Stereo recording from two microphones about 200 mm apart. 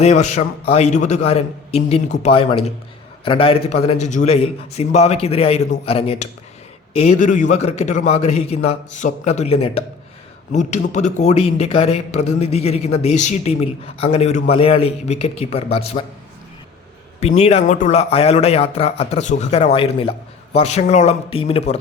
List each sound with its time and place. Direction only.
0.0 s a man's voice: 35° left (ahead or behind)
17.2 s a man's voice: 35° left (ahead or behind)